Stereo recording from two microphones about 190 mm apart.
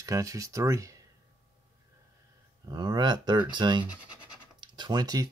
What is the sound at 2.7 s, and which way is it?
Speech, 20° right (ahead or behind).